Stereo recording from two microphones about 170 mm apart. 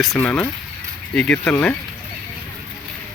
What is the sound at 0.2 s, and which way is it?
Speech, 10° left (ahead or behind).